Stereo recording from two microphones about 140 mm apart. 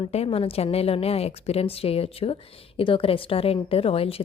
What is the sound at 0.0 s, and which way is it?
A woman's voice, 45° left (ahead or behind).